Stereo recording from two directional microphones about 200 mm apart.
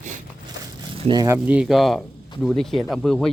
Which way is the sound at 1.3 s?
5° right (ahead or behind).